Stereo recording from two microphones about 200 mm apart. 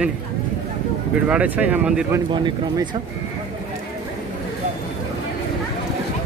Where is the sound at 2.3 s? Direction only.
25° right (ahead or behind).